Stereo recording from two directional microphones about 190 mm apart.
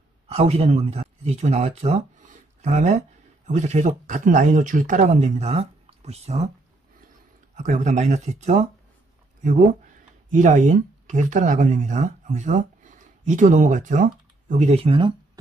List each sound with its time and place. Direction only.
0.3 s speech: 30° right (ahead or behind)
7.5 s speech: 40° right (ahead or behind)
10.3 s speech: 40° right (ahead or behind)